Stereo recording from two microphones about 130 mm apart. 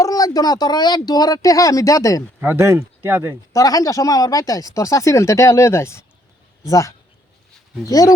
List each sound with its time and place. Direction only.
0.0 s speech: 25° left (ahead or behind)
2.4 s speech: 20° right (ahead or behind)
3.5 s speech: 25° left (ahead or behind)